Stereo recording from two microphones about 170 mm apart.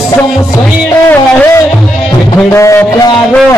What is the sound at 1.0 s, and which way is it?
Music, 15° left (ahead or behind).